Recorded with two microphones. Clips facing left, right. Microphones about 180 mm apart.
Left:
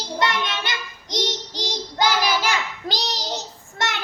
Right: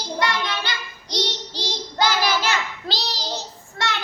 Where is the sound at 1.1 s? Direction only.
15° left (ahead or behind).